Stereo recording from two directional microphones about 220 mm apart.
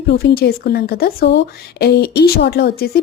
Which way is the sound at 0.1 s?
45° left (ahead or behind).